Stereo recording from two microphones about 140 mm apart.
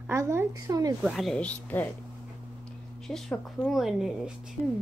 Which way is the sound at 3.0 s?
5° left (ahead or behind).